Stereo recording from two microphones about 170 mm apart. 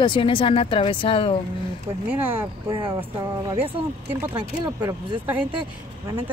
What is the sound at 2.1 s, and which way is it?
Speech, 10° right (ahead or behind).